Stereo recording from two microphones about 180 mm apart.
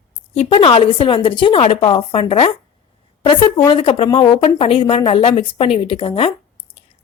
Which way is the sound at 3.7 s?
30° left (ahead or behind).